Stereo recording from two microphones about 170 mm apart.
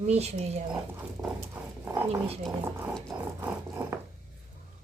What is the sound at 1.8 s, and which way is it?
Speech, 15° right (ahead or behind).